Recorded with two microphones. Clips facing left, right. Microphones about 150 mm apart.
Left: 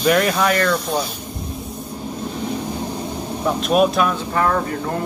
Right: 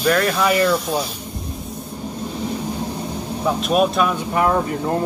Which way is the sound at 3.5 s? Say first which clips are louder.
Left 2 dB; centre (ahead or behind).